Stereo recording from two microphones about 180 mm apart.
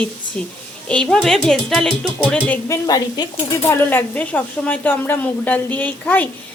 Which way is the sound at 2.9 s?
20° left (ahead or behind).